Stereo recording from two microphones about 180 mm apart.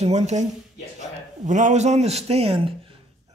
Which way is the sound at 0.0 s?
40° right (ahead or behind).